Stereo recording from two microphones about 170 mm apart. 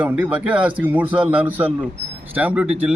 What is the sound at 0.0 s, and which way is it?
A man's voice, 10° right (ahead or behind).